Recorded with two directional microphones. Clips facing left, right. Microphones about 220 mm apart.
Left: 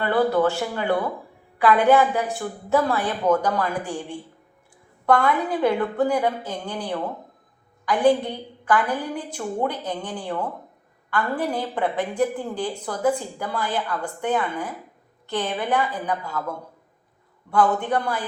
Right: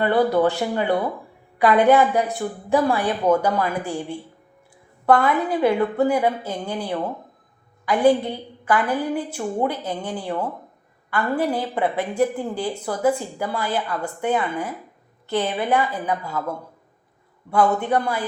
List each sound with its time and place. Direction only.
0.0 s a woman's voice: 20° right (ahead or behind)